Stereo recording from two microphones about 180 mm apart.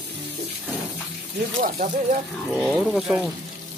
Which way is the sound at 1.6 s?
50° right (ahead or behind).